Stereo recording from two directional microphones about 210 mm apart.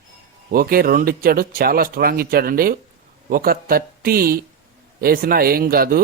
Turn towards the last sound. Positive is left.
turn(degrees=-45)  # may be behind; listen again after turning